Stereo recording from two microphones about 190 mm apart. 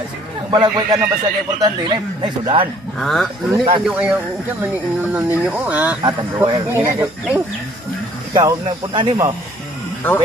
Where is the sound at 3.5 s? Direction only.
25° right (ahead or behind).